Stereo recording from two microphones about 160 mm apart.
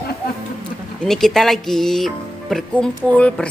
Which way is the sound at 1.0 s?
Centre (ahead or behind).